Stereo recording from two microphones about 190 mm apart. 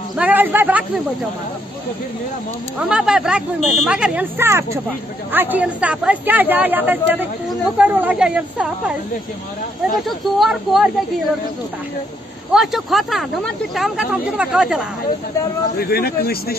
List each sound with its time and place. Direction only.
0.1 s a man's voice: 10° right (ahead or behind)
2.8 s speech: 5° right (ahead or behind)
9.9 s speech: centre (ahead or behind)
12.5 s speech: centre (ahead or behind)
15.8 s speech: 55° left (ahead or behind)